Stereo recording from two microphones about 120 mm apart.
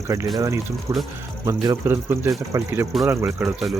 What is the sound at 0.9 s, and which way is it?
Speech, 25° right (ahead or behind).